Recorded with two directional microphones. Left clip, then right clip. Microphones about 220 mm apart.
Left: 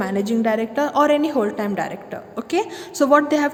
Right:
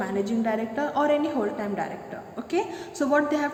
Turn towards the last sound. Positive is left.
turn(degrees=50)  # may be behind; listen again after turning